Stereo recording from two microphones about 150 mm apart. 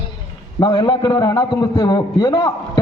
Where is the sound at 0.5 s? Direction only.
30° left (ahead or behind).